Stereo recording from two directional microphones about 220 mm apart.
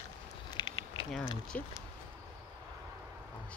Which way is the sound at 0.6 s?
20° left (ahead or behind).